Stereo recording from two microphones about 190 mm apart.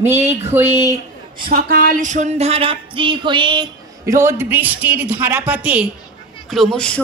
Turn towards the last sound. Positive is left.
turn(degrees=5)  # may be behind; listen again after turning